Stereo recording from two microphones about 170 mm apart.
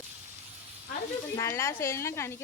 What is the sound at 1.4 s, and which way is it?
Speech, 15° left (ahead or behind).